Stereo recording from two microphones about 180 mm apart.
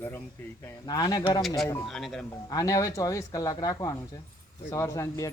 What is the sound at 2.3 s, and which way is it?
Speech, 20° left (ahead or behind).